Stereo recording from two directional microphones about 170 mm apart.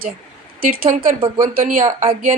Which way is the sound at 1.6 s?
50° right (ahead or behind).